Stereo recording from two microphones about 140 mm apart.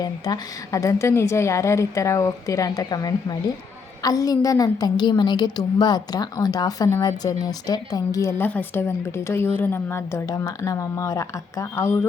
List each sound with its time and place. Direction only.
0.0 s a woman's voice: 25° left (ahead or behind)